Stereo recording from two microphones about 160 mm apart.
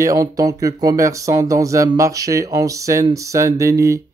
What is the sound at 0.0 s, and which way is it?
Speech, 20° right (ahead or behind).